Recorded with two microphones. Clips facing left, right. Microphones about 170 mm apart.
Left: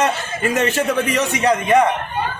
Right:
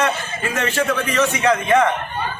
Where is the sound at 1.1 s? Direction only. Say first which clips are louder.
Even; 15° left (ahead or behind).